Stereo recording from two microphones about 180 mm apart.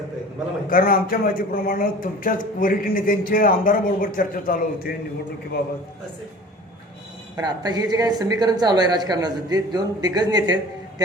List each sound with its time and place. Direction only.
0.7 s a man's voice: 50° left (ahead or behind)
7.3 s a woman's voice: 25° right (ahead or behind)